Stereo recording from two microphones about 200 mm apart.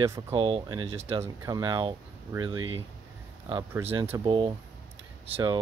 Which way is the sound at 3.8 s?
30° right (ahead or behind).